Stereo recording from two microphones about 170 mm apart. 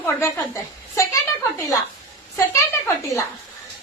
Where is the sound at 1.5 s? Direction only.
20° left (ahead or behind).